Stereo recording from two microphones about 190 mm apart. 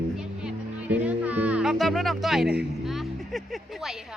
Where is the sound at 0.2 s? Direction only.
5° right (ahead or behind).